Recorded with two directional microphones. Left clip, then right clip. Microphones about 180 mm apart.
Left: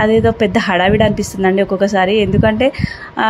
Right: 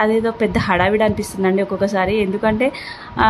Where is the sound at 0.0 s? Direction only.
15° left (ahead or behind).